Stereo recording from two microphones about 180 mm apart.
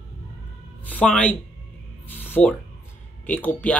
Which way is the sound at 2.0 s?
10° left (ahead or behind).